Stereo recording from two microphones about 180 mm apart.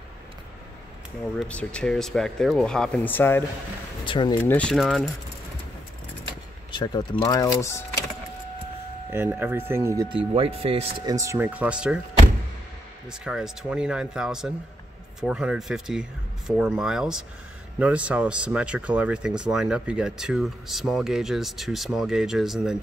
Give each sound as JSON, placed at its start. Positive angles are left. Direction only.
{"t": 1.5, "sound": "speech", "side_deg": 5}
{"t": 4.0, "sound": "speech", "side_deg": 25}
{"t": 4.4, "sound": "speech", "side_deg": 10}
{"t": 6.7, "sound": "speech", "side_deg": 25}
{"t": 9.1, "sound": "speech", "side_deg": -10}
{"t": 10.0, "sound": "speech", "side_deg": -30}
{"t": 11.1, "sound": "speech", "side_deg": -15}
{"t": 13.1, "sound": "speech", "side_deg": -5}